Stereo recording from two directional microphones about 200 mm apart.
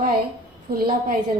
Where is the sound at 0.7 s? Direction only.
45° right (ahead or behind).